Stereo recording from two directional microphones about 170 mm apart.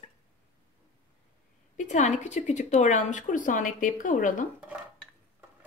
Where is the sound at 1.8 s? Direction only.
45° left (ahead or behind).